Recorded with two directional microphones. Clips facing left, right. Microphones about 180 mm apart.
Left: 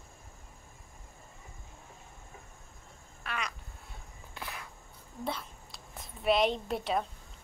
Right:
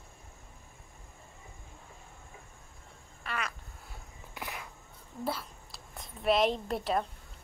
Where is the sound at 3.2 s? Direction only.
Centre (ahead or behind).